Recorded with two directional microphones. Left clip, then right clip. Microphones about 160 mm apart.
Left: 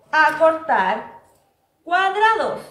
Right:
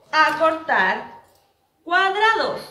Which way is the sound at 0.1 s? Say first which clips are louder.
Left 2 dB; 5° left (ahead or behind).